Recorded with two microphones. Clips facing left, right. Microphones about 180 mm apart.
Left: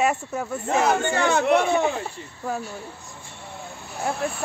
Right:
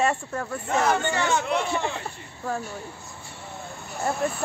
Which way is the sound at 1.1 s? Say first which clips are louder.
Left 5 dB; 55° left (ahead or behind).